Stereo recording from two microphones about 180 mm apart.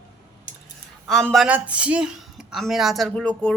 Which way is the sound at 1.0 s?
Centre (ahead or behind).